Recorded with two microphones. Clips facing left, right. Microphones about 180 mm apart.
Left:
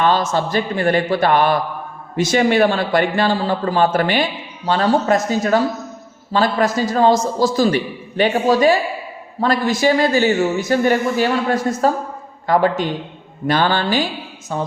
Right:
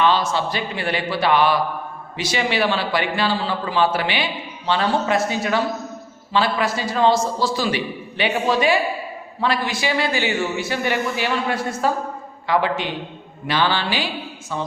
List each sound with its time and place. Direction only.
0.0 s a man's voice: 45° left (ahead or behind)